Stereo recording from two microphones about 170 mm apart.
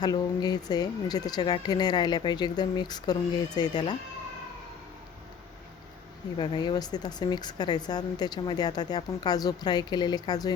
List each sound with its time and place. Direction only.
0.0 s speech: 25° left (ahead or behind)
6.4 s speech: 25° left (ahead or behind)